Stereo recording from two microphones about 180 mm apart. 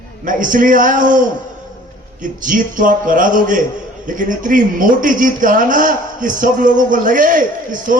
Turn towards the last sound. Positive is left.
turn(degrees=-45)  # may be behind; listen again after turning